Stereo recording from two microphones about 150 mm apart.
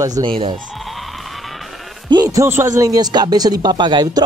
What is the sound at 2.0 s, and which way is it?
Speech, 25° right (ahead or behind).